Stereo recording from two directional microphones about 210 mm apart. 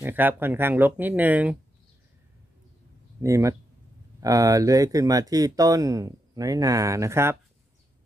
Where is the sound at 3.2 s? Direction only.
15° right (ahead or behind).